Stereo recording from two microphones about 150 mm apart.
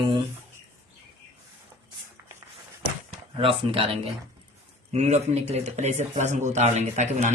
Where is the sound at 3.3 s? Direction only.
40° right (ahead or behind).